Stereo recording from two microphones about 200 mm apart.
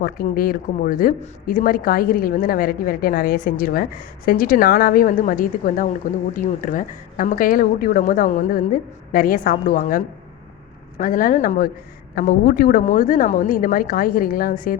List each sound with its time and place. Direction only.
0.0 s speech: 50° left (ahead or behind)